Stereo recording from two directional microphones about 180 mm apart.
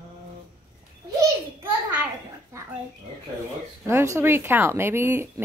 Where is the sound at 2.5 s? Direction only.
15° right (ahead or behind).